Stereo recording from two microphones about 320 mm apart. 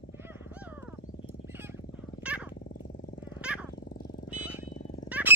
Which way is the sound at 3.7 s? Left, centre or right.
Left.